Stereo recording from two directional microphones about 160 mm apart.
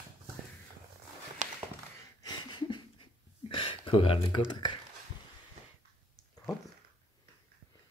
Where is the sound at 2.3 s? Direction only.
30° left (ahead or behind).